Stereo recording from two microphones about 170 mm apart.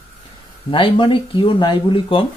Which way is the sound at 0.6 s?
30° left (ahead or behind).